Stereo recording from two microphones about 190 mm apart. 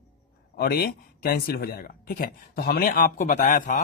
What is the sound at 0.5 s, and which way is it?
Speech, 55° left (ahead or behind).